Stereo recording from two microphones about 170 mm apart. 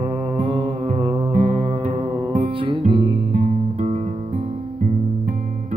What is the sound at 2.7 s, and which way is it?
Music, 30° right (ahead or behind).